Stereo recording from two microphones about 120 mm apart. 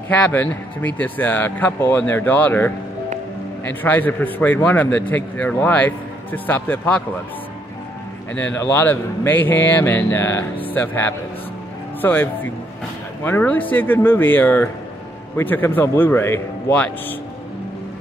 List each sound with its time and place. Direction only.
0.1 s a man's voice: 15° left (ahead or behind)
8.4 s a man's voice: 20° left (ahead or behind)